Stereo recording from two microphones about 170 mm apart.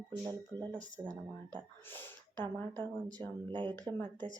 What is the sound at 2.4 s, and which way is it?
A woman's voice, 25° right (ahead or behind).